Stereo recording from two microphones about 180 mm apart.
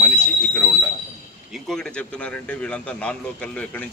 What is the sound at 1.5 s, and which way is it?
Speech, centre (ahead or behind).